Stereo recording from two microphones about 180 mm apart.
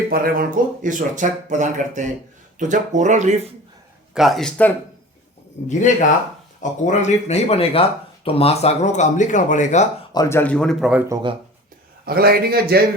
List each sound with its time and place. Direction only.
0.1 s speech: 55° right (ahead or behind)
4.1 s speech: centre (ahead or behind)
5.6 s speech: 40° left (ahead or behind)
10.1 s speech: 20° left (ahead or behind); by 11.0 s 5° right (ahead or behind)
11.1 s speech: 25° right (ahead or behind)
12.0 s speech: 60° right (ahead or behind)